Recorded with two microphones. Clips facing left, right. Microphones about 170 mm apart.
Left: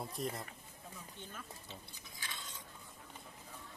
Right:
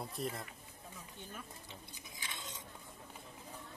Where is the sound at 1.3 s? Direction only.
15° right (ahead or behind).